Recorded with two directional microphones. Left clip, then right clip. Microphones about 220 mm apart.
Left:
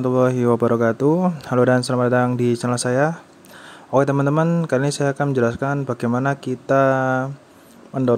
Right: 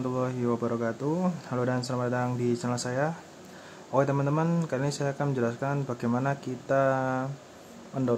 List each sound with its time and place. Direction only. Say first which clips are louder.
0.0 s speech: left 12 dB; 35° left (ahead or behind)